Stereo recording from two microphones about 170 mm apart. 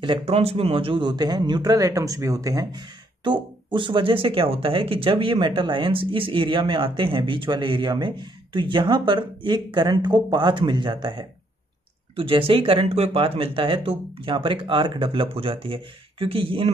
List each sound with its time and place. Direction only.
0.0 s speech: 35° right (ahead or behind)